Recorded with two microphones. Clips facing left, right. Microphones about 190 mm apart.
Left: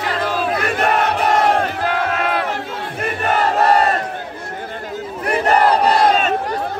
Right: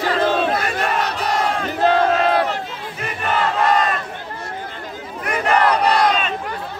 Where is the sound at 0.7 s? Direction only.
55° left (ahead or behind).